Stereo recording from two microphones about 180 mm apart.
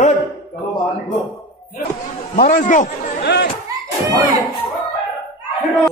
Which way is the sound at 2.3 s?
50° left (ahead or behind).